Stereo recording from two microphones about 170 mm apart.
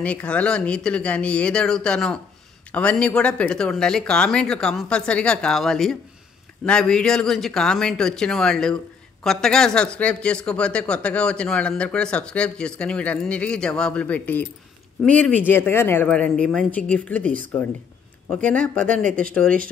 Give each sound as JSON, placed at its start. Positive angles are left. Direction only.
{"t": 0.0, "sound": "speech", "side_deg": 5}
{"t": 18.4, "sound": "speech", "side_deg": 10}